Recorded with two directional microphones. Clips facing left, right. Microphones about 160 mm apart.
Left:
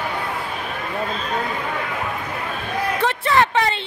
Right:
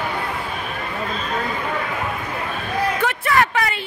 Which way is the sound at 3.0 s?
25° left (ahead or behind).